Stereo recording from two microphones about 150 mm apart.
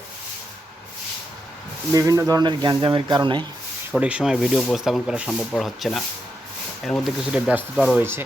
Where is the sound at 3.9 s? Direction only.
5° right (ahead or behind).